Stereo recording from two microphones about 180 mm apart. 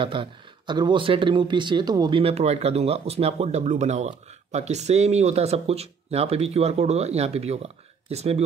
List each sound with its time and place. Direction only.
0.0 s speech: 30° right (ahead or behind)